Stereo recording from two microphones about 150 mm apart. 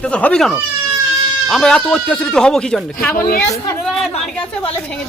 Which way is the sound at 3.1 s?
75° left (ahead or behind).